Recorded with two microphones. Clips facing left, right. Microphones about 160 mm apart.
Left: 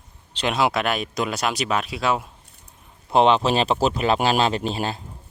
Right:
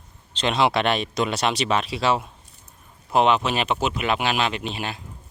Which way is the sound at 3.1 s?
30° left (ahead or behind).